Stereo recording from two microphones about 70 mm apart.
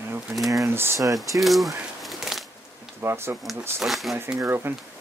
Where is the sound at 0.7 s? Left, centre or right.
Right.